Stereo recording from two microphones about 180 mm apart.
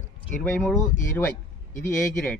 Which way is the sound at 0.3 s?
10° left (ahead or behind).